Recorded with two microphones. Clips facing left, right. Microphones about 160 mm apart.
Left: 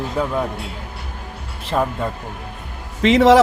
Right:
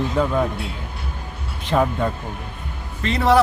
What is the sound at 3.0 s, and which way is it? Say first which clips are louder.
Speech: left 7 dB; 90° left.